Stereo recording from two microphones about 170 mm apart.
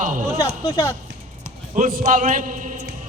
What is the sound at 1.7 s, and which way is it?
A man's voice, 55° right (ahead or behind).